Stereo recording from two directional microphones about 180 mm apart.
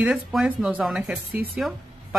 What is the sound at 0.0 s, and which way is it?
Speech, centre (ahead or behind).